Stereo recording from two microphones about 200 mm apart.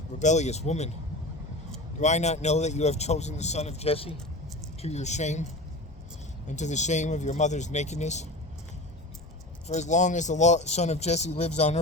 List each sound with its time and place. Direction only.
0.2 s speech: 35° left (ahead or behind)
2.0 s speech: 35° left (ahead or behind)
6.5 s speech: 35° left (ahead or behind)
9.6 s speech: 35° left (ahead or behind)